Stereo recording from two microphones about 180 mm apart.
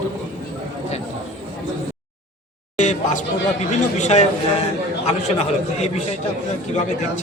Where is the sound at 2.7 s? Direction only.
40° left (ahead or behind).